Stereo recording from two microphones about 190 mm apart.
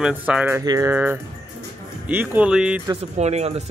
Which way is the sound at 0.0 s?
5° right (ahead or behind).